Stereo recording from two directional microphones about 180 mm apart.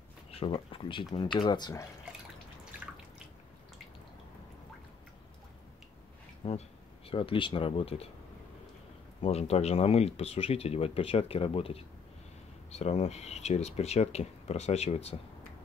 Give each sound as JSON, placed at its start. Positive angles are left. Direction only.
{"t": 0.3, "sound": "speech", "side_deg": 30}
{"t": 6.4, "sound": "speech", "side_deg": 30}
{"t": 9.2, "sound": "speech", "side_deg": 35}